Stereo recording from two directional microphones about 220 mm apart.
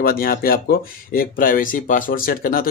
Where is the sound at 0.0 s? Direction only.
40° left (ahead or behind).